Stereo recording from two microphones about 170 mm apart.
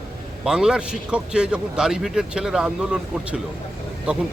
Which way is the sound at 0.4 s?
5° right (ahead or behind).